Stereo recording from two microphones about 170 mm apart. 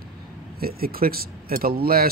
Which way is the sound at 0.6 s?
60° right (ahead or behind).